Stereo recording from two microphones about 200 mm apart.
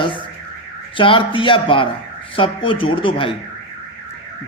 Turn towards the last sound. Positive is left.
turn(degrees=25)  # may be behind; listen again after turning